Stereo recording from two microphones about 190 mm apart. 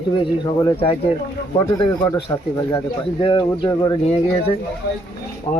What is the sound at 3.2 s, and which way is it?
Speech, 25° left (ahead or behind).